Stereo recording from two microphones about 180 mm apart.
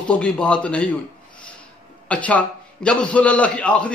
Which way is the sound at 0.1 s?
5° left (ahead or behind).